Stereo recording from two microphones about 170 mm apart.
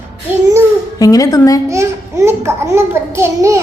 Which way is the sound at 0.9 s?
20° left (ahead or behind).